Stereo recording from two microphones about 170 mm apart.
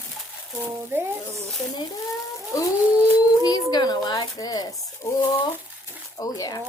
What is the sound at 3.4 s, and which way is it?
Speech, 25° left (ahead or behind).